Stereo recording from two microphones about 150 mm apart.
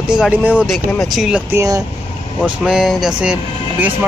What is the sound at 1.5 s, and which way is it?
Speech, 20° right (ahead or behind).